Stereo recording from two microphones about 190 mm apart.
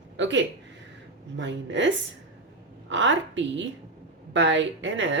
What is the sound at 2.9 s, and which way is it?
Speech, 75° right (ahead or behind).